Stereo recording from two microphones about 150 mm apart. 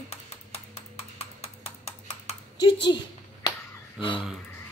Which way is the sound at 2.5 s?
30° left (ahead or behind).